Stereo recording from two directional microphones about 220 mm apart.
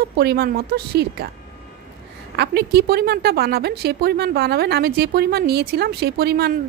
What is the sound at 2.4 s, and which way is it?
A woman's voice, 50° right (ahead or behind).